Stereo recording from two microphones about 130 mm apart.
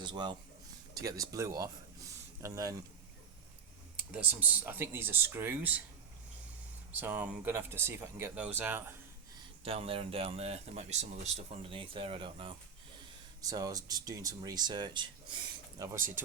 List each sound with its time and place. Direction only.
0.0 s a man's voice: 35° right (ahead or behind)
3.9 s speech: 15° right (ahead or behind)
6.9 s speech: 15° right (ahead or behind)
9.6 s speech: 45° right (ahead or behind)
13.4 s speech: 30° right (ahead or behind)
16.0 s speech: 90° right